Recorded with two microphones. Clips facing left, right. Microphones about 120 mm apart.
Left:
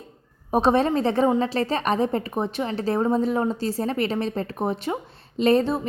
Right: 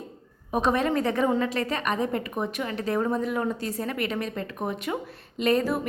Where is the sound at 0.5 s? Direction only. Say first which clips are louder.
Left 4 dB; 30° left (ahead or behind).